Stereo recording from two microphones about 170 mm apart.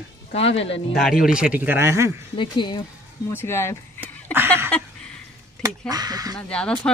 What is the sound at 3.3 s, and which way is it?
Speech, 15° left (ahead or behind).